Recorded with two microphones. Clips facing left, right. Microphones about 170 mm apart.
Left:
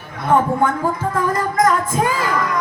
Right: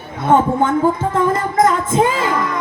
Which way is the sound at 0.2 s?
25° right (ahead or behind).